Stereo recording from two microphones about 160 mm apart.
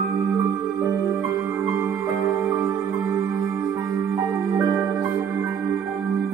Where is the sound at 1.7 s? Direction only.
15° right (ahead or behind).